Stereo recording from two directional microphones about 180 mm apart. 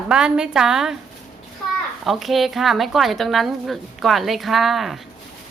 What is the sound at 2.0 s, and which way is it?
Speech, centre (ahead or behind).